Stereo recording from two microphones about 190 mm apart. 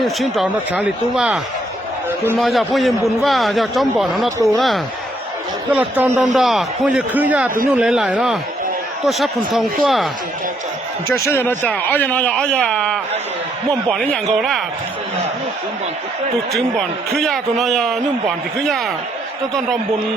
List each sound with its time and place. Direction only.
0.0 s a man's voice: centre (ahead or behind)
11.1 s a man's voice: 10° left (ahead or behind)
16.5 s a man's voice: centre (ahead or behind)